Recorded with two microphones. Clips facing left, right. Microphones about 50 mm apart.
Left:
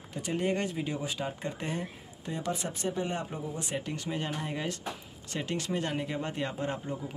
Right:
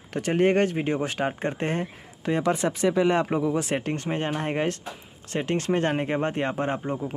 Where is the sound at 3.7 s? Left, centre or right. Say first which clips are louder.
Right 7 dB; right.